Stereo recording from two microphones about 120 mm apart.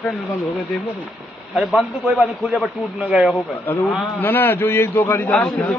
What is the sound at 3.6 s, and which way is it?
A man's voice, 15° left (ahead or behind).